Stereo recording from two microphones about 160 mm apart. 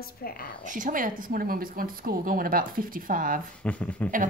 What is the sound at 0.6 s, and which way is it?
A woman's voice, 55° right (ahead or behind).